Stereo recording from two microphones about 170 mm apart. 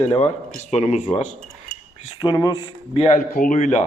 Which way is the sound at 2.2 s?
25° left (ahead or behind).